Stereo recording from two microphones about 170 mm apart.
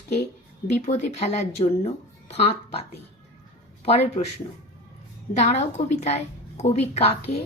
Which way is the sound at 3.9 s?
40° left (ahead or behind).